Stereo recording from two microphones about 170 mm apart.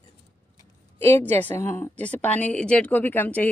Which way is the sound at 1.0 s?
15° left (ahead or behind).